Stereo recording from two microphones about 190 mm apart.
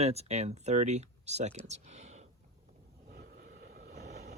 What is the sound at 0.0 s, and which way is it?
Speech, 35° right (ahead or behind).